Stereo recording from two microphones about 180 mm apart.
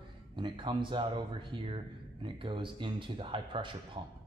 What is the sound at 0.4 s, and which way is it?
A man's voice, 25° right (ahead or behind).